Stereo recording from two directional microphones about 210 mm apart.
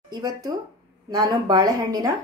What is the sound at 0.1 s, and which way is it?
Speech, 15° right (ahead or behind).